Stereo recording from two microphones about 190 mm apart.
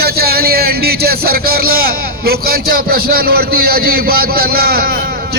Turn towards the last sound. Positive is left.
turn(degrees=-50)  # may be behind; listen again after turning